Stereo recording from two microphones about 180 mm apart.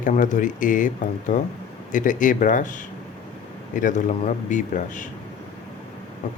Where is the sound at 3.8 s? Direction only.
45° left (ahead or behind).